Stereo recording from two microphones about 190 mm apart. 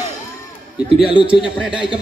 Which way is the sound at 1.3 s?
5° right (ahead or behind).